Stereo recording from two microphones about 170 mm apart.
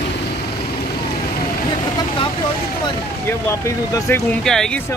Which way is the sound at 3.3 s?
15° left (ahead or behind).